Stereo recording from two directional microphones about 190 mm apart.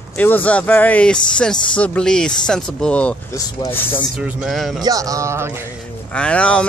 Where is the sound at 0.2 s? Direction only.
10° left (ahead or behind).